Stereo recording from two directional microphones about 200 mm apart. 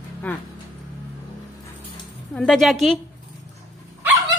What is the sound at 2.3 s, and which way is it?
Speech, 5° left (ahead or behind).